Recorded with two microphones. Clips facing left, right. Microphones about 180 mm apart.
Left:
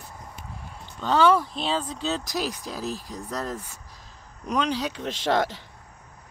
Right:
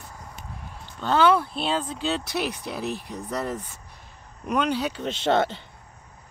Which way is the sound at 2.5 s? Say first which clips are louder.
Right 2 dB; 65° right (ahead or behind).